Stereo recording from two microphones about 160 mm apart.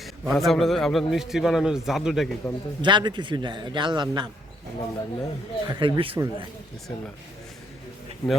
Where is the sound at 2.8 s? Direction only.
30° right (ahead or behind).